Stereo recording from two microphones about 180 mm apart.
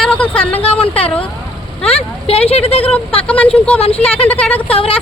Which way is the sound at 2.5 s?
35° left (ahead or behind).